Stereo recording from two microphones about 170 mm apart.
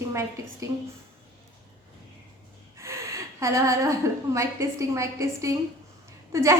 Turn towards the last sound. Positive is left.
turn(degrees=-15)  # may be behind; listen again after turning